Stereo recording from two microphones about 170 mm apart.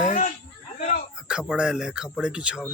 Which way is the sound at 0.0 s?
45° left (ahead or behind).